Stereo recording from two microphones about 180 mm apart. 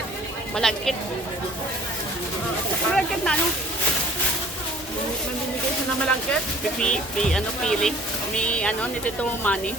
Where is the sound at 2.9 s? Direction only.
5° left (ahead or behind).